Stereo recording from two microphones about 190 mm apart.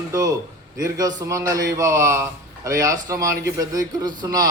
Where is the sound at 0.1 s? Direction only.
20° right (ahead or behind).